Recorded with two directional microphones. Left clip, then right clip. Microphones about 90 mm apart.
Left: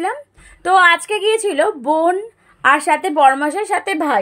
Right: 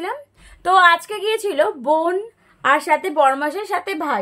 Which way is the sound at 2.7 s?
40° left (ahead or behind).